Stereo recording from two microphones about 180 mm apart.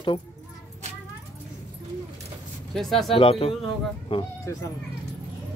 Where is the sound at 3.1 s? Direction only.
30° left (ahead or behind).